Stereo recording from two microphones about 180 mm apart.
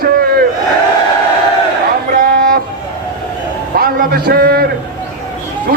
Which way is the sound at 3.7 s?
55° right (ahead or behind).